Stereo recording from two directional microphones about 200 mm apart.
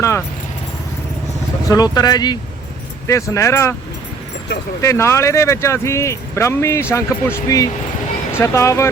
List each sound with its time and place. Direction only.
1.6 s speech: 20° left (ahead or behind)
4.8 s speech: 15° left (ahead or behind)